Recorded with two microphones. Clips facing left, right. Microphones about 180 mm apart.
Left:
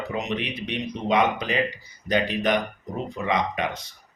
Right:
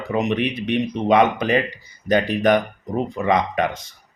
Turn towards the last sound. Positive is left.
turn(degrees=-50)  # may be behind; listen again after turning